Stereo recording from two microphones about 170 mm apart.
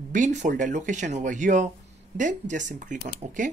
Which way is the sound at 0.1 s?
45° right (ahead or behind).